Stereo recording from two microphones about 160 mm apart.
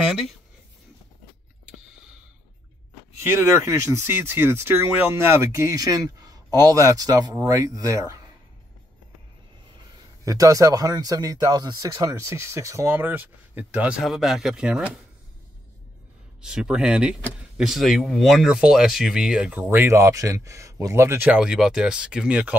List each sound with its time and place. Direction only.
3.3 s speech: 15° right (ahead or behind)
10.2 s speech: 20° right (ahead or behind)
16.3 s speech: 5° right (ahead or behind)